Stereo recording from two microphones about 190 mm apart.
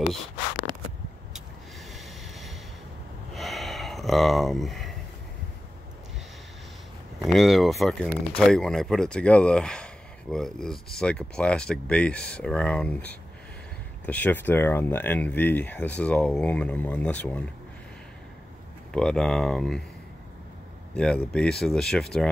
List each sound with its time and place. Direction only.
1.9 s train: centre (ahead or behind)
3.3 s a sound: centre (ahead or behind)
7.3 s speech: centre (ahead or behind)
18.9 s speech: 5° left (ahead or behind)
20.9 s speech: 5° left (ahead or behind)